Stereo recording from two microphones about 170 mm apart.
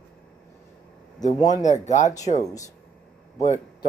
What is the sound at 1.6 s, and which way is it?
Speech, 45° left (ahead or behind).